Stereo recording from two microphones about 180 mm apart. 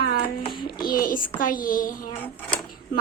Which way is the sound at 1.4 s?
50° left (ahead or behind).